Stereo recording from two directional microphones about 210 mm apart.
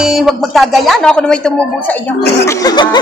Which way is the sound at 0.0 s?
Centre (ahead or behind).